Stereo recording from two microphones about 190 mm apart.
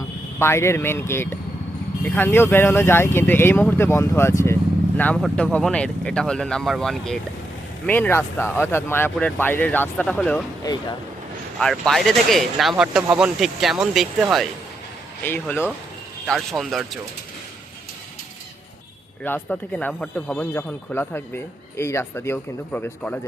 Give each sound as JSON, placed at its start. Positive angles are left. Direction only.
{"t": 0.3, "sound": "speech", "side_deg": 15}
{"t": 11.6, "sound": "speech", "side_deg": 0}
{"t": 15.2, "sound": "speech", "side_deg": 10}
{"t": 19.2, "sound": "speech", "side_deg": 10}